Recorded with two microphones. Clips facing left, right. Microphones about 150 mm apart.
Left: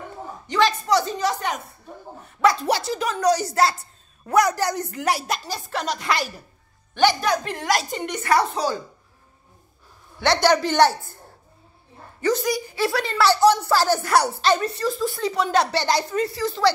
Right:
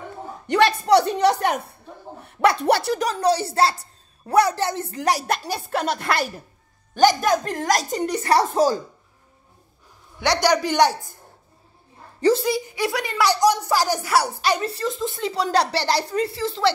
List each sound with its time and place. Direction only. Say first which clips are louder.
0.5 s a woman's voice: right 3 dB; 60° right (ahead or behind)
3.0 s a woman's voice: even; 35° right (ahead or behind)
5.2 s a woman's voice: right 3 dB; 60° right (ahead or behind)
6.9 s a woman's voice: right 2 dB; 45° right (ahead or behind)
10.1 s a woman's voice: left 1 dB; 15° right (ahead or behind)
12.2 s a woman's voice: right 3 dB; 30° right (ahead or behind); by 14.6 s 10° right (ahead or behind)
14.6 s speech: left 1 dB; 30° right (ahead or behind)